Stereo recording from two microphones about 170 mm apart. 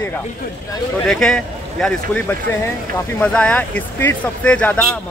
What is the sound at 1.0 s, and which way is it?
Speech, 5° left (ahead or behind).